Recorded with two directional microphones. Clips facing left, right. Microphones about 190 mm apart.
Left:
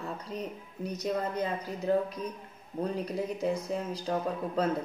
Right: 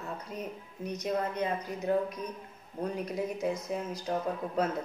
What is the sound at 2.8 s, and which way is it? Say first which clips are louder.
Speech: left 1 dB; 30° left (ahead or behind).